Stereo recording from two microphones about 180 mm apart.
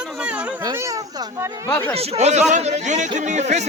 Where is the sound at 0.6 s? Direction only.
15° right (ahead or behind).